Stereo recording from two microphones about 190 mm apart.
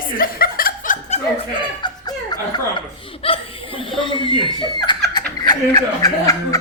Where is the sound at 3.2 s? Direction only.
30° left (ahead or behind).